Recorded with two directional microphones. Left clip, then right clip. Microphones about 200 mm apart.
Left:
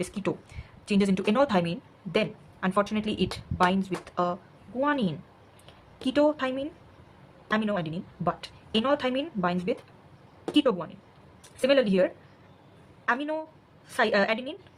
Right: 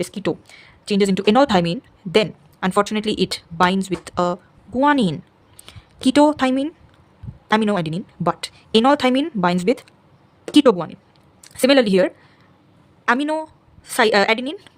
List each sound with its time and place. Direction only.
0.0 s a woman's voice: 40° right (ahead or behind); by 14.7 s 60° right (ahead or behind)